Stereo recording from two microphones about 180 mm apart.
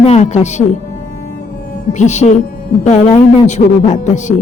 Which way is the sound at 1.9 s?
40° left (ahead or behind).